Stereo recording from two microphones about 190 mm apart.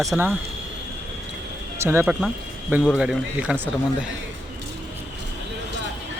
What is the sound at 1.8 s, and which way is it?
Speech, 10° right (ahead or behind).